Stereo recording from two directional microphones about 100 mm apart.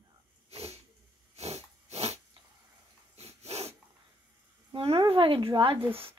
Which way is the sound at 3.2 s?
90° right.